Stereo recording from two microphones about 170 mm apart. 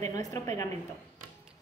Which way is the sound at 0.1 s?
20° left (ahead or behind).